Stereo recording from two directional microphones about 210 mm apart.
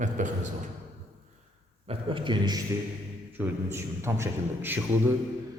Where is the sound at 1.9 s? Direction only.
25° right (ahead or behind).